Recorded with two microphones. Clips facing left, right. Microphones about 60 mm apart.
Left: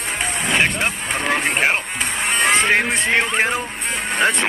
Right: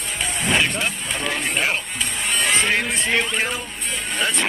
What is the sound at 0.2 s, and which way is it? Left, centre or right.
Music, left.